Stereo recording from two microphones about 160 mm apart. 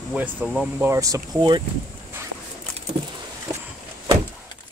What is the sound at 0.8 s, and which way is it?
Speech, 20° right (ahead or behind).